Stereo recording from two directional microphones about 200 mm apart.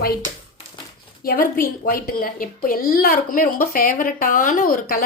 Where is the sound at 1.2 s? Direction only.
45° left (ahead or behind).